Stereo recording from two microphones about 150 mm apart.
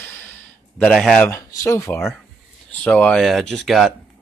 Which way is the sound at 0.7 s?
Centre (ahead or behind).